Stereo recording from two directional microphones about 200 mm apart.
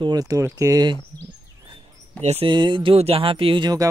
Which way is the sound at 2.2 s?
30° right (ahead or behind).